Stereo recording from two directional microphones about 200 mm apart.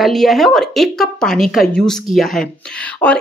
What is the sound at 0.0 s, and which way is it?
Speech, centre (ahead or behind).